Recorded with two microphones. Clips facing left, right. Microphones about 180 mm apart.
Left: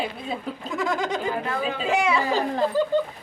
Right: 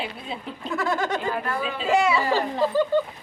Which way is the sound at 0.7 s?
15° left (ahead or behind).